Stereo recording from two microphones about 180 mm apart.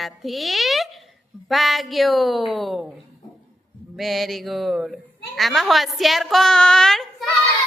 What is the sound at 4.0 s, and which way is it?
A woman's voice, centre (ahead or behind).